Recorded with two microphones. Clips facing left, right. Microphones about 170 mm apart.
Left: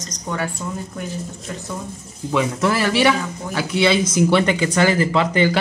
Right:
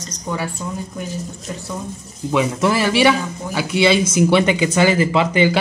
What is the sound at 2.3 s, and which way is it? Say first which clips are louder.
Speech: right 2 dB; 15° right (ahead or behind).